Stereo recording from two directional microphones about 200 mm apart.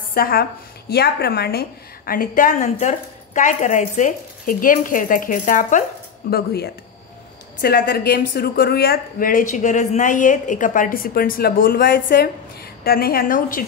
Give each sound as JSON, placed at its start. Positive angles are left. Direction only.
{"t": 0.1, "sound": "speech", "side_deg": 50}
{"t": 6.3, "sound": "speech", "side_deg": 55}